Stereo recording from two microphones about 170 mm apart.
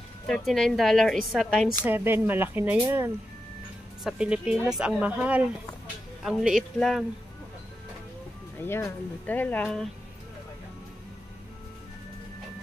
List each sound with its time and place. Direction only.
0.3 s speech: centre (ahead or behind)
1.9 s speech: 10° right (ahead or behind)
8.6 s speech: 15° left (ahead or behind)